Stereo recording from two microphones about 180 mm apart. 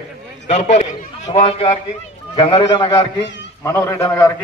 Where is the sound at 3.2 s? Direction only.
80° left.